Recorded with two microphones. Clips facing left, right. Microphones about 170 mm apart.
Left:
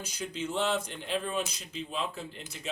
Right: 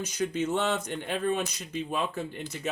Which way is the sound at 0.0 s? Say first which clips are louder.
Right 7 dB; 60° right (ahead or behind).